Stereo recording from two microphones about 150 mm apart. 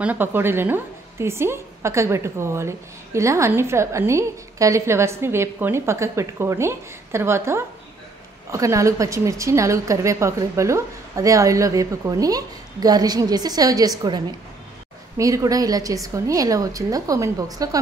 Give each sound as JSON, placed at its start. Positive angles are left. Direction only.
{"t": 0.0, "sound": "a woman's voice", "side_deg": -10}